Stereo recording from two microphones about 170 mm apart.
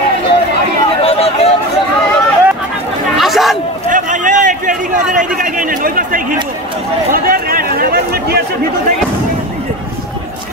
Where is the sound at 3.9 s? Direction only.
50° right (ahead or behind).